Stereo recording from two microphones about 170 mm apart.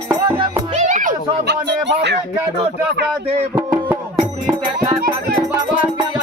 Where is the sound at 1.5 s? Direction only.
90° right.